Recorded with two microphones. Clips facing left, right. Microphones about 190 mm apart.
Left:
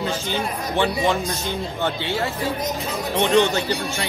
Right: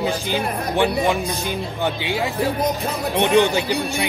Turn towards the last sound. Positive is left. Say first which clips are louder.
# right 3 dB
turn(degrees=-15)  # may be behind; listen again after turning